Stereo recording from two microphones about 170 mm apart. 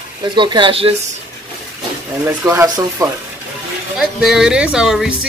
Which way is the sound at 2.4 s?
15° right (ahead or behind).